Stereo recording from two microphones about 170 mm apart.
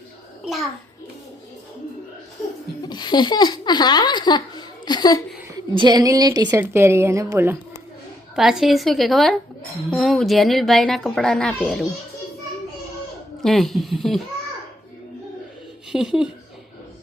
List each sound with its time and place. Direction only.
2.8 s speech: 25° left (ahead or behind)
5.5 s a woman's voice: 25° right (ahead or behind)
8.4 s a woman's voice: centre (ahead or behind)
13.4 s a woman's voice: centre (ahead or behind)
15.9 s a woman's voice: centre (ahead or behind)